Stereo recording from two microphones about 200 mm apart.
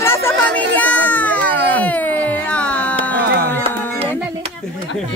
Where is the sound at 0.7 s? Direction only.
10° left (ahead or behind).